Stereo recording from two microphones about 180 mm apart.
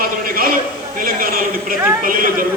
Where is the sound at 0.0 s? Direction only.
55° right (ahead or behind).